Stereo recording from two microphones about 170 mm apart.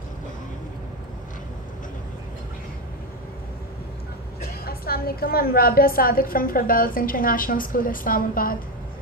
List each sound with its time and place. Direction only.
4.6 s a woman's voice: 60° left (ahead or behind)